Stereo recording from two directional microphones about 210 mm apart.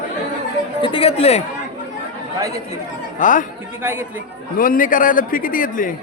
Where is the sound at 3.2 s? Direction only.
40° left (ahead or behind).